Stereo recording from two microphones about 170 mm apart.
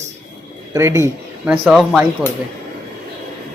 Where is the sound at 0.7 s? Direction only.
15° right (ahead or behind).